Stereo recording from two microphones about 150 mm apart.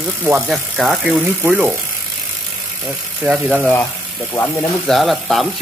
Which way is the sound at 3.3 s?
5° right (ahead or behind).